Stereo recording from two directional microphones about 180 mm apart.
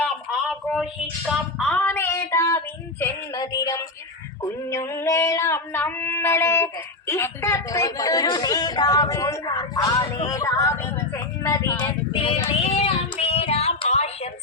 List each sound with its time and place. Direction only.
0.3 s a sound: centre (ahead or behind)
1.2 s a woman's voice: centre (ahead or behind); by 11.9 s 15° left (ahead or behind)
12.1 s child singing: 30° left (ahead or behind)